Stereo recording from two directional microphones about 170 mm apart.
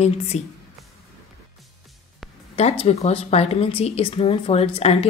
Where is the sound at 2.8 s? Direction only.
35° left (ahead or behind).